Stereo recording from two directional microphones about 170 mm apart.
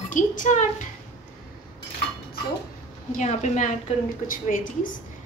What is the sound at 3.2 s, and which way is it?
A woman's voice, 45° left (ahead or behind).